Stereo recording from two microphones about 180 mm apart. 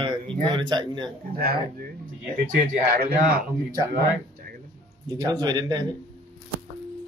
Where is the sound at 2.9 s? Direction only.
55° right (ahead or behind).